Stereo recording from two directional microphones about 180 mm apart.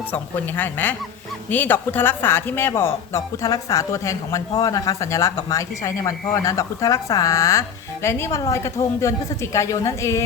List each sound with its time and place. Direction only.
0.1 s speech: 10° left (ahead or behind)